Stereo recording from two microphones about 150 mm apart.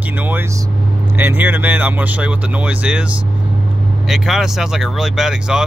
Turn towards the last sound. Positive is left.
turn(degrees=-5)  # may be behind; listen again after turning